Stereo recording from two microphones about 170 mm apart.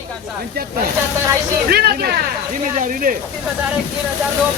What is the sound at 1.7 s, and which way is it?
Speech, 70° right (ahead or behind).